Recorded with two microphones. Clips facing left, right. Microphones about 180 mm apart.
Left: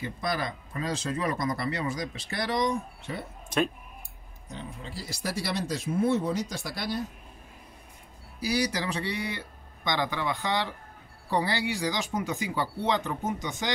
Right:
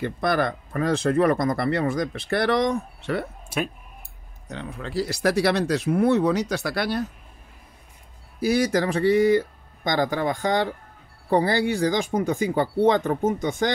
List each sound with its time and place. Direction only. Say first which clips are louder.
0.0 s speech: right 8 dB; 60° right (ahead or behind)
3.4 s speech: left 6 dB; 10° right (ahead or behind)
4.5 s speech: right 6 dB; 75° right (ahead or behind)
8.4 s speech: right 8 dB; 50° right (ahead or behind)